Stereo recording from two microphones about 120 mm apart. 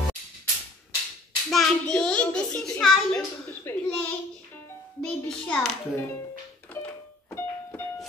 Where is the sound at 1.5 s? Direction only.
5° left (ahead or behind).